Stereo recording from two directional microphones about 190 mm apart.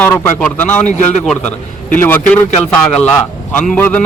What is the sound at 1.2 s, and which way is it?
A man's voice, 5° left (ahead or behind).